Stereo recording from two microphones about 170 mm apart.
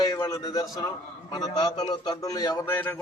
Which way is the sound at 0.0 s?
20° left (ahead or behind).